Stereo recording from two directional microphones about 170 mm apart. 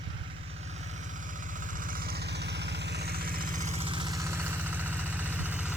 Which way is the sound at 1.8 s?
55° right (ahead or behind).